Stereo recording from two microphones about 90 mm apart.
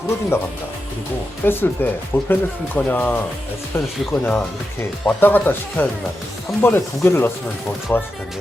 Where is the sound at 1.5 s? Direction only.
25° left (ahead or behind).